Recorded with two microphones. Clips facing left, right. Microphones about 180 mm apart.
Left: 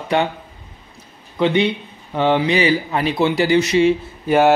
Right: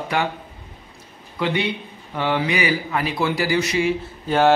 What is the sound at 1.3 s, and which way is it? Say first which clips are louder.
Speech: left 6 dB; 25° left (ahead or behind).